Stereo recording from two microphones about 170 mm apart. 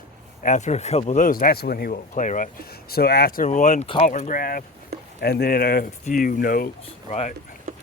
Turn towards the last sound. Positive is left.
turn(degrees=40)  # may be behind; listen again after turning